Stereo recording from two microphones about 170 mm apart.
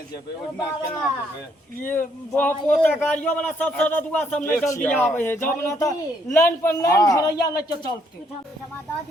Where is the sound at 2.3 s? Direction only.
10° left (ahead or behind).